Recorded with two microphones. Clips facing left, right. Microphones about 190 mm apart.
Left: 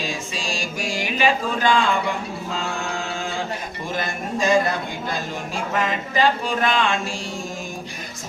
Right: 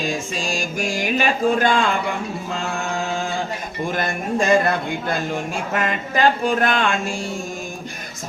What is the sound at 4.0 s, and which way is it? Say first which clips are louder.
Speech: right 2 dB; 55° right (ahead or behind).